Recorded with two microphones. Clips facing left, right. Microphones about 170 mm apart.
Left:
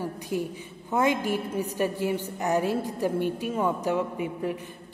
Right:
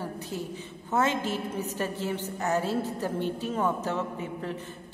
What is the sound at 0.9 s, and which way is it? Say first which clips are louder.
A woman's voice: left 2 dB; 15° left (ahead or behind).